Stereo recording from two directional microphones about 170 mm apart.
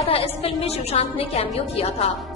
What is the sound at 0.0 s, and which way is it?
A woman's voice, 35° left (ahead or behind).